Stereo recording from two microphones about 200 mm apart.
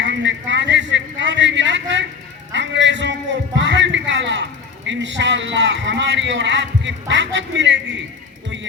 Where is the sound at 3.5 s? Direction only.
65° right (ahead or behind).